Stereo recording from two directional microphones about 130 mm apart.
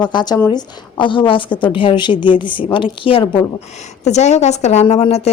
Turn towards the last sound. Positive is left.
turn(degrees=55)  # may be behind; listen again after turning